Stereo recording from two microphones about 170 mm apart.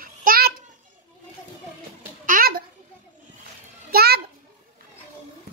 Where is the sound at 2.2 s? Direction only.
55° right (ahead or behind).